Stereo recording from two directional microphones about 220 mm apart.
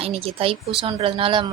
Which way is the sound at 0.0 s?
25° right (ahead or behind).